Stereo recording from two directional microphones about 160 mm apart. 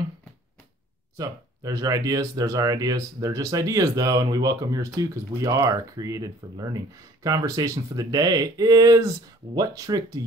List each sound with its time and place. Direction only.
1.1 s speech: 20° right (ahead or behind)